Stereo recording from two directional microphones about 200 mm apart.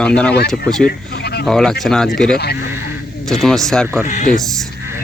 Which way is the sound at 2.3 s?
55° left (ahead or behind).